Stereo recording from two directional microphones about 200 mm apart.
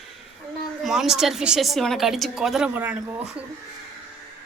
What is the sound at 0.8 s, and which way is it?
A woman's voice, centre (ahead or behind).